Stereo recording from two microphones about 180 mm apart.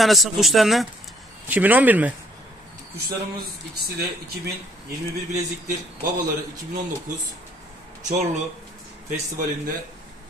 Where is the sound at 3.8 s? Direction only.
60° right (ahead or behind).